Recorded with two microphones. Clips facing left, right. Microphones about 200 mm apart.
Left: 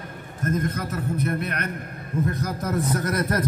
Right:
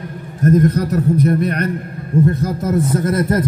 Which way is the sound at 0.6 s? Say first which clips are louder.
Right 12 dB; 40° right (ahead or behind).